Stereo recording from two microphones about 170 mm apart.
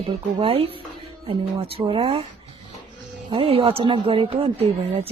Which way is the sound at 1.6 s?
35° right (ahead or behind).